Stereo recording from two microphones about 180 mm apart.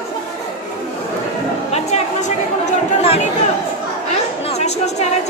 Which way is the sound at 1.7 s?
40° left (ahead or behind).